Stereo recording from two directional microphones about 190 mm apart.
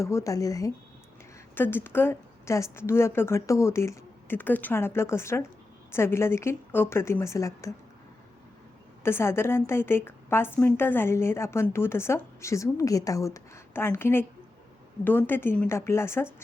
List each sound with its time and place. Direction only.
0.0 s a woman's voice: 15° left (ahead or behind)
9.0 s a woman's voice: 15° left (ahead or behind)